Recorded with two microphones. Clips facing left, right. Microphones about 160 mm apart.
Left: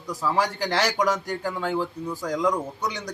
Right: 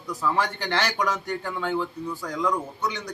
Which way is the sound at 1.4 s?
10° left (ahead or behind).